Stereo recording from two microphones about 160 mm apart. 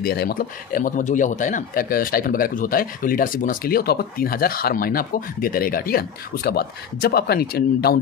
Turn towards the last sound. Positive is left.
turn(degrees=75)  # may be behind; listen again after turning